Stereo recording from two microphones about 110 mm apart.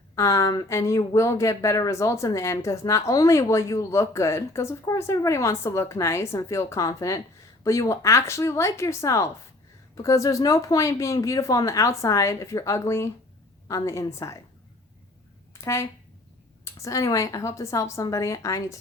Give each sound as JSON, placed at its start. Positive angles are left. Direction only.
{"t": 0.2, "sound": "speech", "side_deg": 30}
{"t": 15.6, "sound": "speech", "side_deg": 25}